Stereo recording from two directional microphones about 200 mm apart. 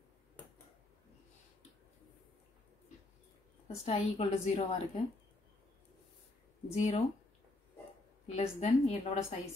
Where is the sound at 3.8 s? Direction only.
30° left (ahead or behind).